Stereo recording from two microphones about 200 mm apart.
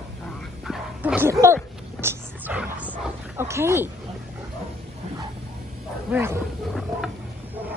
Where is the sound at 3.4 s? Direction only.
15° right (ahead or behind).